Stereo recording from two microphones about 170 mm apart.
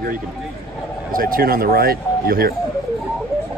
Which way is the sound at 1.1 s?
60° right (ahead or behind).